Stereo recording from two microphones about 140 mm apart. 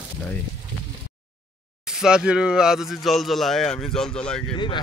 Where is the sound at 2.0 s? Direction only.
5° right (ahead or behind).